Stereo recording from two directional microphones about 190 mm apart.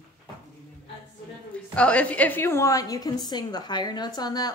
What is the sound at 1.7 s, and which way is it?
A woman's voice, 5° left (ahead or behind).